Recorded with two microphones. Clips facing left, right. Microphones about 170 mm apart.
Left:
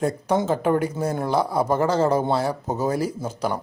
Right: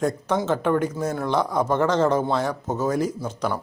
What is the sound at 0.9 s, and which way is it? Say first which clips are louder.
Speech: left 1 dB; 30° left (ahead or behind).